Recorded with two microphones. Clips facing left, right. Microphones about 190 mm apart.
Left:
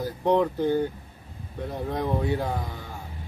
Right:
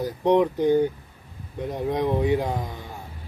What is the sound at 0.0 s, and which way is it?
Speech, 15° right (ahead or behind).